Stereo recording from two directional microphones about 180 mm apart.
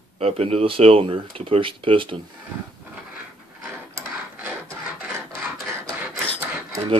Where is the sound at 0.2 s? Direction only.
35° right (ahead or behind).